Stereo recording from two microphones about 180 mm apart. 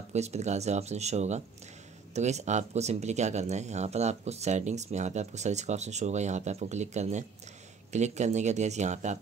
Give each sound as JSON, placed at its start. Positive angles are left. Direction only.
{"t": 0.1, "sound": "speech", "side_deg": -40}